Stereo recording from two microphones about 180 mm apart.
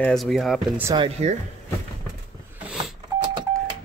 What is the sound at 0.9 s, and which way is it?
Speech, 30° right (ahead or behind).